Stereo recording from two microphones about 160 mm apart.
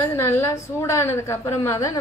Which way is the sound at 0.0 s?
15° left (ahead or behind).